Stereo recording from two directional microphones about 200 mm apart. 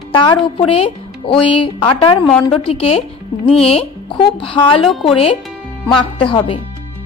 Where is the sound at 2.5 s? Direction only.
30° left (ahead or behind).